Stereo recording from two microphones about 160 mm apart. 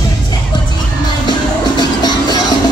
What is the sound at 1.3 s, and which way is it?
Music, 25° left (ahead or behind).